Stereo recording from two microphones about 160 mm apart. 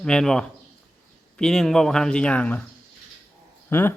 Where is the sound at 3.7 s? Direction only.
15° left (ahead or behind).